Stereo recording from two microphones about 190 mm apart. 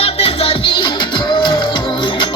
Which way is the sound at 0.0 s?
30° left (ahead or behind).